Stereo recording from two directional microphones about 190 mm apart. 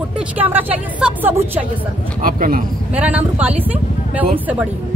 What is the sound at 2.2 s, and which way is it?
Speech, 45° right (ahead or behind).